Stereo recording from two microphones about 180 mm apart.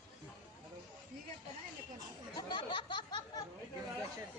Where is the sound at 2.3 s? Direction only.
25° left (ahead or behind).